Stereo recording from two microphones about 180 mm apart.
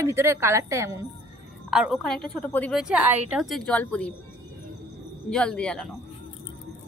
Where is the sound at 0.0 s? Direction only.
15° right (ahead or behind).